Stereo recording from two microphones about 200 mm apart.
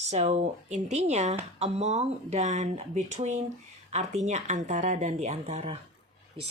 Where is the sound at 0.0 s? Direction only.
35° right (ahead or behind).